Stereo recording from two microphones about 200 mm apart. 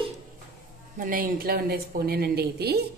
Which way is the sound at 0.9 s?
45° right (ahead or behind).